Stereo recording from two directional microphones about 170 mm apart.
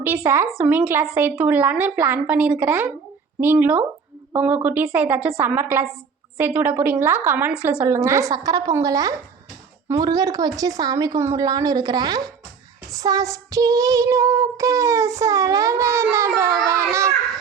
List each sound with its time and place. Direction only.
0.0 s child singing: 10° right (ahead or behind)
7.6 s speech: 15° right (ahead or behind)
13.0 s child singing: 20° right (ahead or behind)